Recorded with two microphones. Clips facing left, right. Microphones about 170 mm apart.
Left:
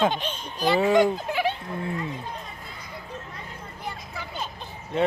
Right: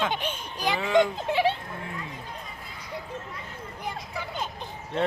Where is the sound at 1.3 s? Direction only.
30° right (ahead or behind).